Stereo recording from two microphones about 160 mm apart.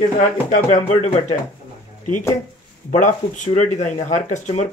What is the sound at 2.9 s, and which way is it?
Speech, 50° left (ahead or behind).